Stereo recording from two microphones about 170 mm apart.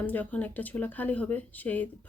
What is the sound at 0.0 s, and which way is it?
Speech, 10° left (ahead or behind).